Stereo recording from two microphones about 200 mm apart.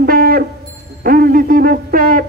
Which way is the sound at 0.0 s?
50° right (ahead or behind).